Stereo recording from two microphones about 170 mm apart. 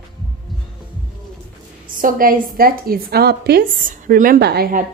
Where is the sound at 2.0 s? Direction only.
55° right (ahead or behind).